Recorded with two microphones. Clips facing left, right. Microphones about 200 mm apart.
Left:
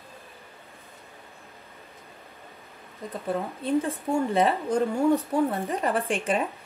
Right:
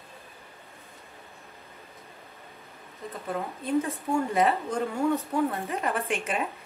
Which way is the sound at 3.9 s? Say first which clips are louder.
Left 2 dB; 30° left (ahead or behind).